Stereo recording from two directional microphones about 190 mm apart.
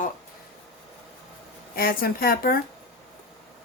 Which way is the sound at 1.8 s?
50° left (ahead or behind).